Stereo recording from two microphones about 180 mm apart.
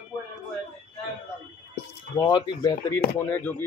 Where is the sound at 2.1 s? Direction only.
25° left (ahead or behind).